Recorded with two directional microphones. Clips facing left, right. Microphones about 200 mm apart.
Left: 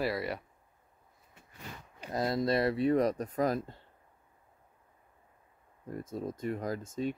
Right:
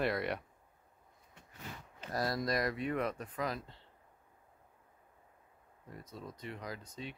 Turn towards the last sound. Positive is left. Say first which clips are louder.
# left 11 dB
turn(degrees=45)  # may be behind; listen again after turning